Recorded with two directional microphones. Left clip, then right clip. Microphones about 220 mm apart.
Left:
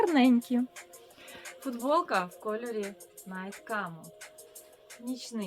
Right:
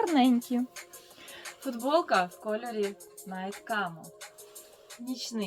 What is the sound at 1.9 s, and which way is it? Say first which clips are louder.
Speech: right 2 dB; 15° left (ahead or behind).